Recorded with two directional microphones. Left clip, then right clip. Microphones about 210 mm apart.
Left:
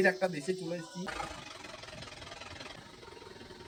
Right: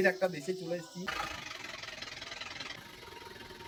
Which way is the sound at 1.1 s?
35° left (ahead or behind).